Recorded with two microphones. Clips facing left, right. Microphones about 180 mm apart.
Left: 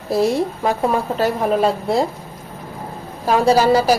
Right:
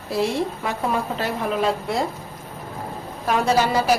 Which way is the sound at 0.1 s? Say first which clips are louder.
Left 5 dB; 40° left (ahead or behind).